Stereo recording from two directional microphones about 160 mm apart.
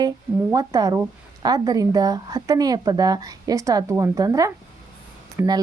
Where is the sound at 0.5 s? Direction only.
20° right (ahead or behind).